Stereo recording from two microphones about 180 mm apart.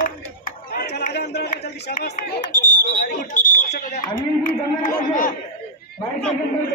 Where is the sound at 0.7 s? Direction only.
55° left (ahead or behind).